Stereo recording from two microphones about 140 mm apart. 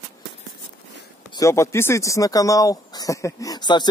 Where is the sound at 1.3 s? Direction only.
25° left (ahead or behind).